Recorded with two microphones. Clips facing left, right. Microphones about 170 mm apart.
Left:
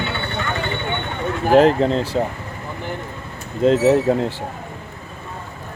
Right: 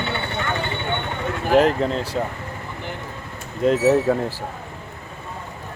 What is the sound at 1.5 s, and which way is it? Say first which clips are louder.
Speech: left 4 dB; 30° left (ahead or behind).